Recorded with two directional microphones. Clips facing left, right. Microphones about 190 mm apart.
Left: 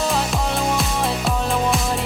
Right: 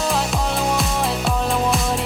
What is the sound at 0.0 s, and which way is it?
Music, centre (ahead or behind).